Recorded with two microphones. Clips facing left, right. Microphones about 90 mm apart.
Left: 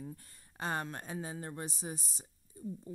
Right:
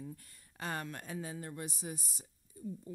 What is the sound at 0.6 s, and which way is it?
A woman's voice, 30° left (ahead or behind).